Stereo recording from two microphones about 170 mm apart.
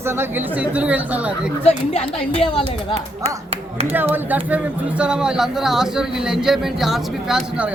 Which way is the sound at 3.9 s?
10° right (ahead or behind).